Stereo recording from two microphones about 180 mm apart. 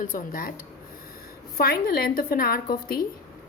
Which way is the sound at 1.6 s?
55° left (ahead or behind).